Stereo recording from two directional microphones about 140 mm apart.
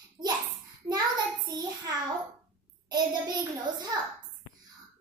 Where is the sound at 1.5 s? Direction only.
30° right (ahead or behind).